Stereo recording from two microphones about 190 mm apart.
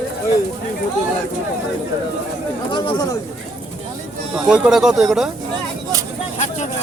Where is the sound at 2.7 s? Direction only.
25° left (ahead or behind).